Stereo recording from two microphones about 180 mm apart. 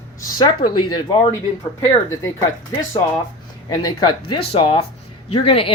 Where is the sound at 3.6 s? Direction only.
25° left (ahead or behind).